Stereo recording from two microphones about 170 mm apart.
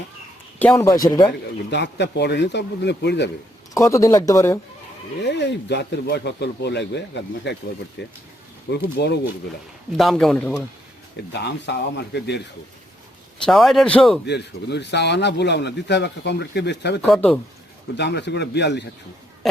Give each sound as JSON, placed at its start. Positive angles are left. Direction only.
{"t": 0.6, "sound": "speech", "side_deg": 15}
{"t": 1.3, "sound": "a man's voice", "side_deg": 90}
{"t": 3.8, "sound": "speech", "side_deg": 15}
{"t": 5.2, "sound": "speech", "side_deg": 90}
{"t": 8.0, "sound": "speech", "side_deg": 75}
{"t": 10.0, "sound": "speech", "side_deg": 0}
{"t": 11.2, "sound": "speech", "side_deg": 80}
{"t": 13.4, "sound": "speech", "side_deg": 0}
{"t": 14.3, "sound": "a man's voice", "side_deg": 80}
{"t": 17.2, "sound": "speech", "side_deg": 5}
{"t": 17.9, "sound": "speech", "side_deg": 90}